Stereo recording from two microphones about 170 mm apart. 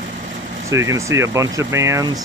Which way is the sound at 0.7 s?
15° right (ahead or behind).